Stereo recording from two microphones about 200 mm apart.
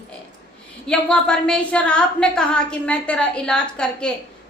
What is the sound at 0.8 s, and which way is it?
A woman's voice, 5° left (ahead or behind).